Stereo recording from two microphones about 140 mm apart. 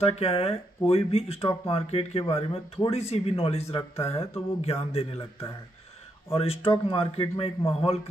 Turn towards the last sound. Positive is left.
turn(degrees=40)  # may be behind; listen again after turning